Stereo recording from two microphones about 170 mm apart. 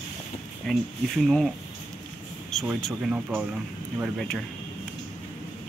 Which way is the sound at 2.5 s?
Centre (ahead or behind).